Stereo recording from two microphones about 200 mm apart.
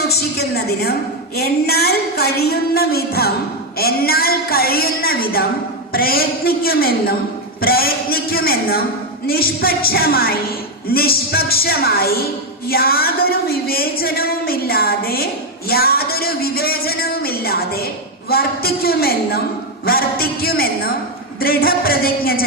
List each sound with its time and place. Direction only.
0.0 s a woman's voice: 55° left (ahead or behind)